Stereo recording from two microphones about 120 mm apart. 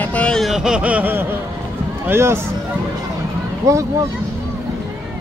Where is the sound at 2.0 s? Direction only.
20° right (ahead or behind).